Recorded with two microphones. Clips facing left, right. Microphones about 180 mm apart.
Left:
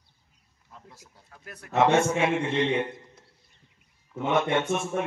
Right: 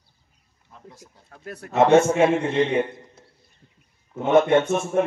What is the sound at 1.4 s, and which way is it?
Speech, 35° right (ahead or behind).